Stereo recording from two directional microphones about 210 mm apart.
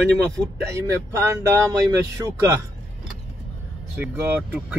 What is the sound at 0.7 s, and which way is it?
Speech, 15° right (ahead or behind).